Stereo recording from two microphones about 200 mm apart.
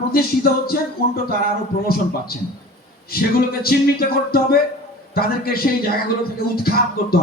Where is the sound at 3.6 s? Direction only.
50° left (ahead or behind).